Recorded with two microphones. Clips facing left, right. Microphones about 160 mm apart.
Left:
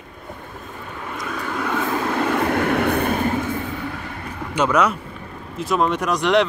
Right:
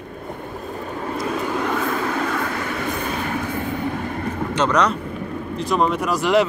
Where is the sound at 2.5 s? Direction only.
65° left (ahead or behind).